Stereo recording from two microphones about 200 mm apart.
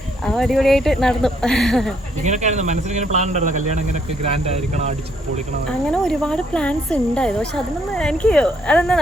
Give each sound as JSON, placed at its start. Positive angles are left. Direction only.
{"t": 0.3, "sound": "speech", "side_deg": 0}
{"t": 2.2, "sound": "speech", "side_deg": -35}
{"t": 5.9, "sound": "speech", "side_deg": 5}